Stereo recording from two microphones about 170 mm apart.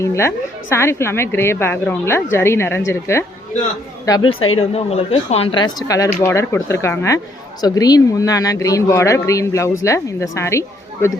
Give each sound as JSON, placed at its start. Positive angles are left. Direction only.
{"t": 0.0, "sound": "a woman's voice", "side_deg": 15}
{"t": 4.7, "sound": "a woman's voice", "side_deg": 35}